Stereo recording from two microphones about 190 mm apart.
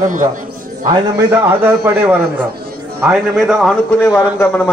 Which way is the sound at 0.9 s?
10° right (ahead or behind).